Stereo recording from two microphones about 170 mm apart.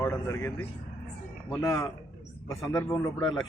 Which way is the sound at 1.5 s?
15° left (ahead or behind).